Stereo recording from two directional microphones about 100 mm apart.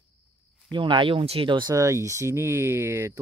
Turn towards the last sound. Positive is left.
turn(degrees=-30)  # may be behind; listen again after turning